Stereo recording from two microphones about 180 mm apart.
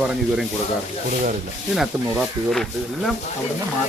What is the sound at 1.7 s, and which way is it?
A man's voice, centre (ahead or behind).